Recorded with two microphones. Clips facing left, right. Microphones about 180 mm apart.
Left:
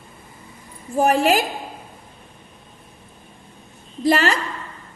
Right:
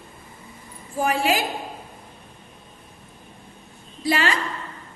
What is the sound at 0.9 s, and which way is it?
Speech, 45° left (ahead or behind).